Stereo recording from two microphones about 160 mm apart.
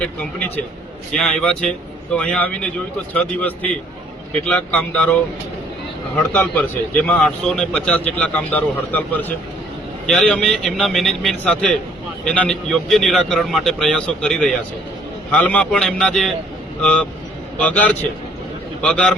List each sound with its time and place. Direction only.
0.0 s a man's voice: 10° left (ahead or behind)
6.1 s a man's voice: 10° left (ahead or behind)